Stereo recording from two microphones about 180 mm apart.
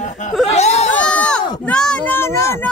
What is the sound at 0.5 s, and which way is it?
Whimper, 35° left (ahead or behind).